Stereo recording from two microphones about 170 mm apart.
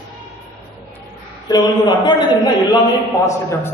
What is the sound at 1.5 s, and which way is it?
A man's voice, 25° left (ahead or behind).